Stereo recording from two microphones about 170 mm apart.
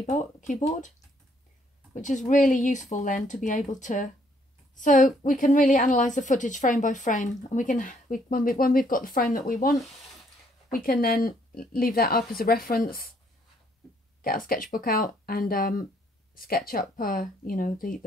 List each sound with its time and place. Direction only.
0.0 s a woman's voice: 45° left (ahead or behind)
2.0 s a woman's voice: 45° left (ahead or behind)
10.7 s a woman's voice: 60° left (ahead or behind)
14.2 s a woman's voice: 55° left (ahead or behind)